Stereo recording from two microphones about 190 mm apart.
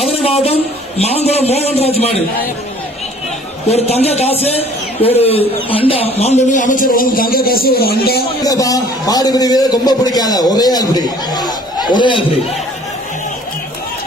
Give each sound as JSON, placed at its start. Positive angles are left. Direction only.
{"t": 0.1, "sound": "a man's voice", "side_deg": 30}
{"t": 3.7, "sound": "a man's voice", "side_deg": 35}
{"t": 8.4, "sound": "a man's voice", "side_deg": 20}